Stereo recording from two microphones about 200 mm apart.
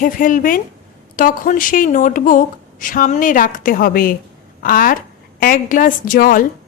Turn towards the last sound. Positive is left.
turn(degrees=45)  # may be behind; listen again after turning